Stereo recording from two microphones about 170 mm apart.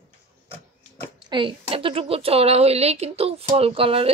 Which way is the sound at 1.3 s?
30° right (ahead or behind).